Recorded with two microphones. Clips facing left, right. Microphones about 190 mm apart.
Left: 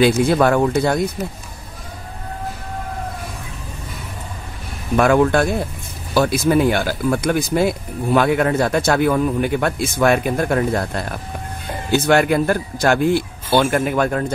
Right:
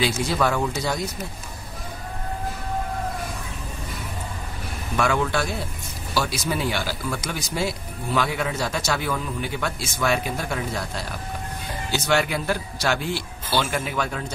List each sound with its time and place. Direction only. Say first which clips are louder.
0.2 s speech: left 8 dB; 55° left (ahead or behind)
4.9 s speech: left 9 dB; 55° left (ahead or behind)